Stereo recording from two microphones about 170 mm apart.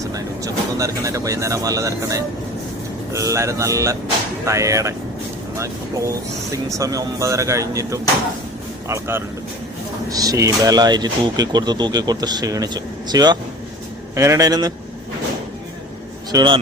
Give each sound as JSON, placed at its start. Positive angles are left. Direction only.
{"t": 0.0, "sound": "speech", "side_deg": -20}
{"t": 16.3, "sound": "speech", "side_deg": -25}